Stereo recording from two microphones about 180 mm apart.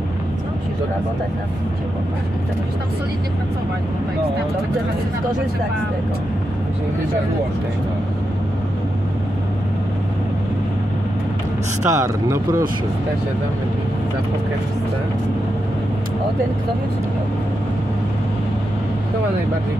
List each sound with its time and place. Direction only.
11.8 s speech: 15° right (ahead or behind)